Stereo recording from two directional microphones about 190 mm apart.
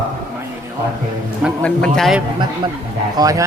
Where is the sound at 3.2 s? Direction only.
20° right (ahead or behind).